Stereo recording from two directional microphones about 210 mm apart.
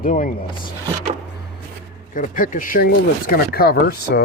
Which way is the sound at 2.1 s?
40° left (ahead or behind).